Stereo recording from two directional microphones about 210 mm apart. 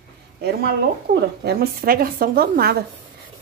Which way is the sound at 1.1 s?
50° right (ahead or behind).